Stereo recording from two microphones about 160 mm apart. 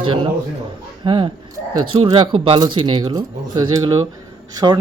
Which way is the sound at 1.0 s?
30° right (ahead or behind).